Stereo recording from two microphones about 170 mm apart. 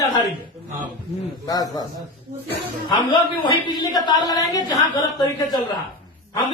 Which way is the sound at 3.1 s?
30° left (ahead or behind).